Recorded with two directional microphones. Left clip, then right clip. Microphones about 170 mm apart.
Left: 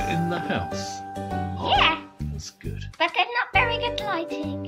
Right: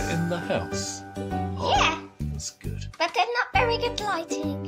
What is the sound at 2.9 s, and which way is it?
A child's voice, 60° right (ahead or behind).